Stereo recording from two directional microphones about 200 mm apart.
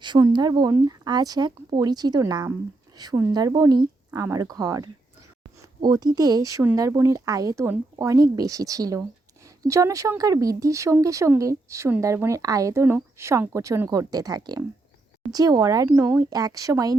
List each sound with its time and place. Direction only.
0.0 s speech: 20° right (ahead or behind)